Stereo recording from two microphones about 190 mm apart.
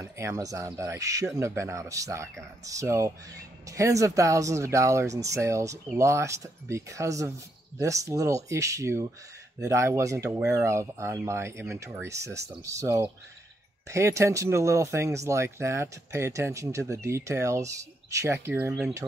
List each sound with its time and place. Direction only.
0.0 s speech: 15° right (ahead or behind)